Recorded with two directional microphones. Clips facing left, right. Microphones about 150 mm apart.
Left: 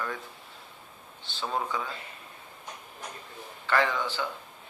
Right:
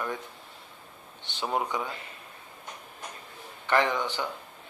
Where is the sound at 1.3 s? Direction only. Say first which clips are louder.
Right 2 dB; 15° right (ahead or behind).